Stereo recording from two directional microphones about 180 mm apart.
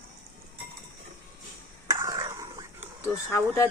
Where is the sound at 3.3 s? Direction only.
15° left (ahead or behind).